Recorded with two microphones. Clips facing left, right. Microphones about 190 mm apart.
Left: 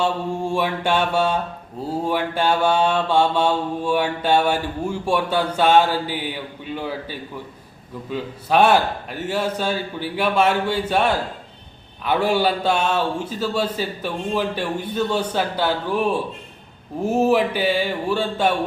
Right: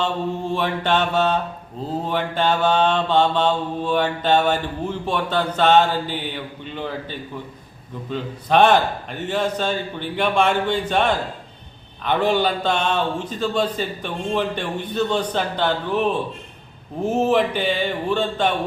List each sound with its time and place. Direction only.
0.5 s mantra: 10° left (ahead or behind)